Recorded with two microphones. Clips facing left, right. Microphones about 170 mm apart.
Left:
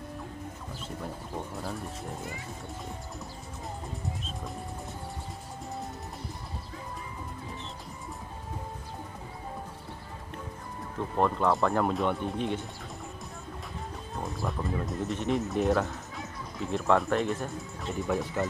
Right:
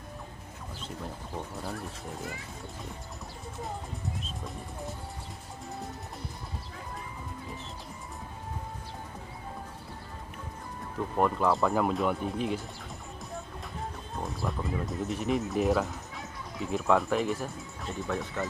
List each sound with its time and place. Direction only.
11.1 s speech: 5° right (ahead or behind)
14.2 s speech: centre (ahead or behind)